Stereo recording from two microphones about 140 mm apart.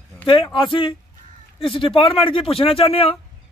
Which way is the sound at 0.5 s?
35° left (ahead or behind).